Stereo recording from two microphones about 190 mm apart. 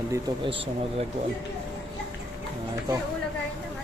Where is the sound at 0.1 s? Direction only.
25° right (ahead or behind).